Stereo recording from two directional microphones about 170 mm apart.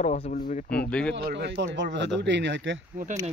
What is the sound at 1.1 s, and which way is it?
Speech, 90° right.